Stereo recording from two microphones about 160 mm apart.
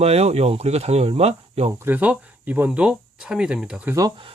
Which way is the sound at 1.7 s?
15° right (ahead or behind).